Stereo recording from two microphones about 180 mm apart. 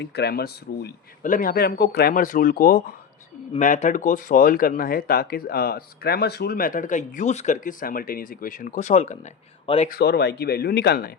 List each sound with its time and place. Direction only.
0.0 s speech: 65° left (ahead or behind); by 9.9 s 35° left (ahead or behind)
9.9 s speech: 65° left (ahead or behind)